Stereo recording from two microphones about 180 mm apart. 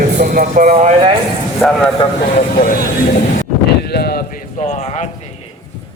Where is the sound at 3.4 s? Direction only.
60° left (ahead or behind).